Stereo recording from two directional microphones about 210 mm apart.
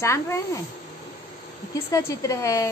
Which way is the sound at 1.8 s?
15° left (ahead or behind).